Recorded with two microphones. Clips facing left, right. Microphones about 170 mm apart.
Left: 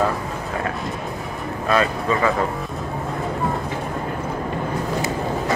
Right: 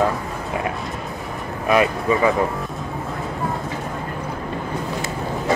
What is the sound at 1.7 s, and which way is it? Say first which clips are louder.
Speech: right 2 dB; 15° right (ahead or behind).